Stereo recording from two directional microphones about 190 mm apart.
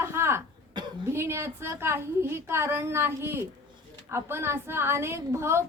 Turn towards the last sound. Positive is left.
turn(degrees=-15)  # may be behind; listen again after turning